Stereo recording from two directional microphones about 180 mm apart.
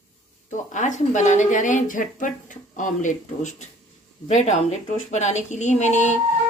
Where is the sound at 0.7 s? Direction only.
45° left (ahead or behind).